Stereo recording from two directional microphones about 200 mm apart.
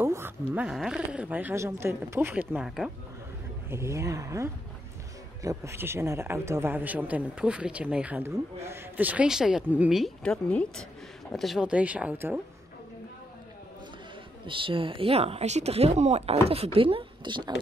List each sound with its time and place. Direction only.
0.0 s speech: 10° right (ahead or behind)
3.7 s speech: 15° right (ahead or behind)
14.4 s a woman's voice: 25° right (ahead or behind)